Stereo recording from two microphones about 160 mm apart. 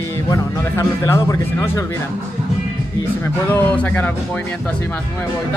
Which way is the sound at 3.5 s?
10° left (ahead or behind).